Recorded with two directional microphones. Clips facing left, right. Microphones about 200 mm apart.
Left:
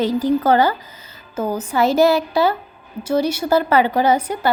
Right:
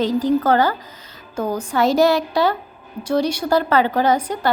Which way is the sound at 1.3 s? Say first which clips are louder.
Left 1 dB; 5° left (ahead or behind).